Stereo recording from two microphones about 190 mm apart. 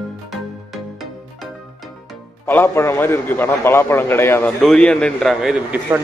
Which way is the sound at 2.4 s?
15° left (ahead or behind).